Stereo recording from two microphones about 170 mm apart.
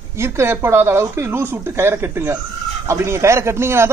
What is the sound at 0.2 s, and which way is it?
A man's voice, 15° right (ahead or behind).